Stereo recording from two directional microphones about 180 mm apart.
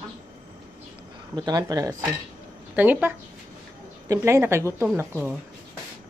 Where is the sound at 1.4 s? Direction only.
20° right (ahead or behind).